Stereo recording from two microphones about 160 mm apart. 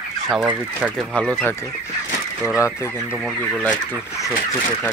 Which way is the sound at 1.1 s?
10° left (ahead or behind).